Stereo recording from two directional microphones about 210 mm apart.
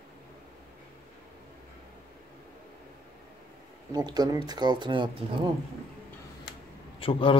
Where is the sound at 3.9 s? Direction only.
20° right (ahead or behind).